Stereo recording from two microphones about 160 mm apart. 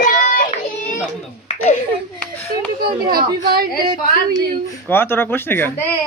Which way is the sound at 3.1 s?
70° right (ahead or behind).